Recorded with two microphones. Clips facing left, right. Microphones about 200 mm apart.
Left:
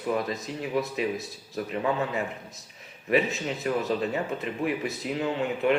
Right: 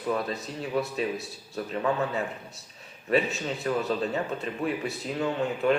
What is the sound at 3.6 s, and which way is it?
Speech, 15° left (ahead or behind).